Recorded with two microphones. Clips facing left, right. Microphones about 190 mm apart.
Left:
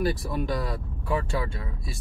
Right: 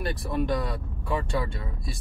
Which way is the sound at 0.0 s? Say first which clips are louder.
Left 1 dB; centre (ahead or behind).